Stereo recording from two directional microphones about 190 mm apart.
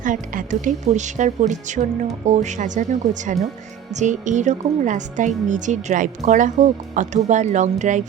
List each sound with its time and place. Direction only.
0.0 s a woman's voice: 40° right (ahead or behind)